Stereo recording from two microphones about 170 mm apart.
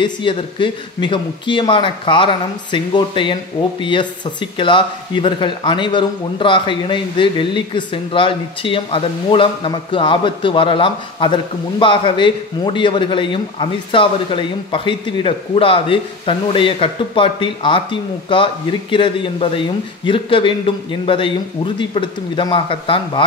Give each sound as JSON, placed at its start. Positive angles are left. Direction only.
{"t": 0.0, "sound": "a man's voice", "side_deg": 30}